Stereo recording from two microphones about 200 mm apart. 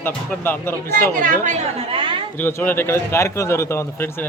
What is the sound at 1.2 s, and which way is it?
Speech, 35° right (ahead or behind).